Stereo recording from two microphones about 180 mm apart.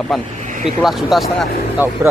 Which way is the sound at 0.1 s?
Centre (ahead or behind).